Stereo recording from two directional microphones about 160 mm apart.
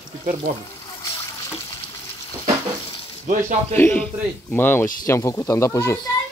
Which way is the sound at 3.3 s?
50° right (ahead or behind).